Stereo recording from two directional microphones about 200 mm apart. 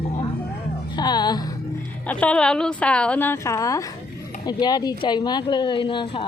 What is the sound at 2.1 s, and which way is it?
A woman's voice, 5° left (ahead or behind).